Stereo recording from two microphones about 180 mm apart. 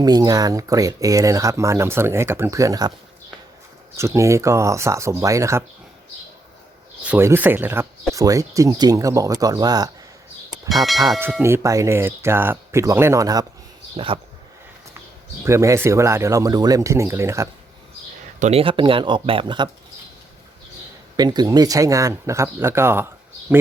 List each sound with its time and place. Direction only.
0.0 s speech: 20° right (ahead or behind)
3.9 s speech: 15° right (ahead or behind)
7.0 s speech: 10° right (ahead or behind)
10.7 s speech: centre (ahead or behind)
11.4 s speech: 15° right (ahead or behind)
13.9 s speech: 30° right (ahead or behind)
15.4 s speech: 15° right (ahead or behind)
18.3 s speech: 35° right (ahead or behind)
21.2 s speech: 20° right (ahead or behind)